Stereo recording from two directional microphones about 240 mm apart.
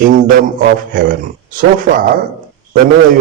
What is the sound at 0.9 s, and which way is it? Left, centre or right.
A man's voice, right.